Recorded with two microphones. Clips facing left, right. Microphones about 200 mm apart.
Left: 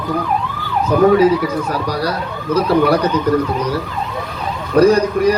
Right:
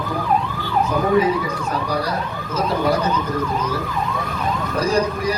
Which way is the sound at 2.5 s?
70° left (ahead or behind).